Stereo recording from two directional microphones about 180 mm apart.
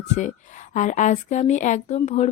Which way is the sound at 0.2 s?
45° left (ahead or behind).